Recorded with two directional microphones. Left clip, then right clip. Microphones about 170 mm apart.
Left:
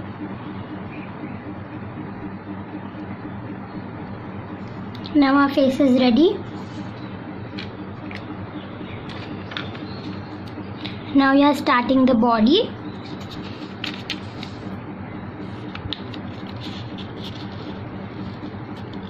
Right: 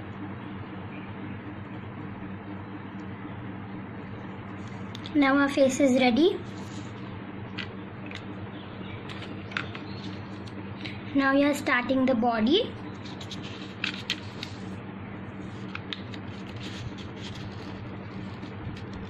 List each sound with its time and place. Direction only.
5.2 s a woman's voice: 25° left (ahead or behind)
11.1 s a woman's voice: 40° left (ahead or behind)